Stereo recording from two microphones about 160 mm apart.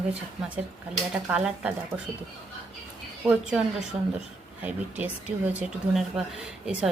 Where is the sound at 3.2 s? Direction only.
5° right (ahead or behind).